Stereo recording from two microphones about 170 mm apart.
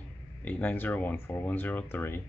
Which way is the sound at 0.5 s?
10° left (ahead or behind).